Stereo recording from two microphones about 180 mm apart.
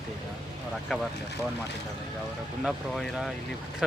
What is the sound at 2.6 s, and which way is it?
Speech, centre (ahead or behind).